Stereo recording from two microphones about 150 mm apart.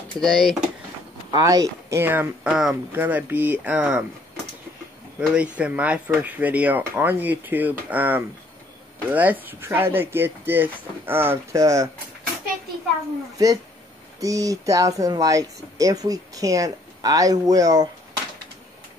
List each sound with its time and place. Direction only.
0.2 s speech: centre (ahead or behind)
1.3 s speech: 25° right (ahead or behind)
5.2 s speech: 5° right (ahead or behind)
14.2 s speech: 20° right (ahead or behind)